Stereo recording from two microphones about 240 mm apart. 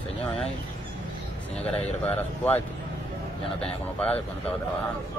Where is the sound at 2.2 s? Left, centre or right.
Centre.